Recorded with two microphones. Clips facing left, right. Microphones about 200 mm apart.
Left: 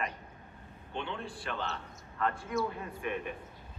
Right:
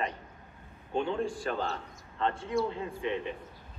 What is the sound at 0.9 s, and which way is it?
Speech, 40° right (ahead or behind).